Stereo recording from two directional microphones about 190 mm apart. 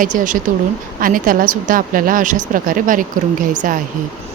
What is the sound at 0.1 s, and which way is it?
A woman's voice, 45° right (ahead or behind).